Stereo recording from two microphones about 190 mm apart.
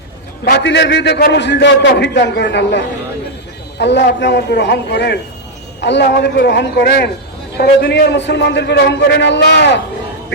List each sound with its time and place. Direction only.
0.4 s a man's voice: 60° left (ahead or behind)